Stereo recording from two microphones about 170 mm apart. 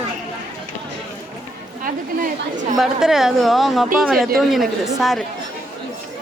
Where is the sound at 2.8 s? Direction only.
Centre (ahead or behind).